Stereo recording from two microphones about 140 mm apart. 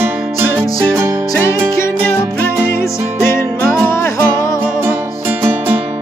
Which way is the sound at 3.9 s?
20° left (ahead or behind).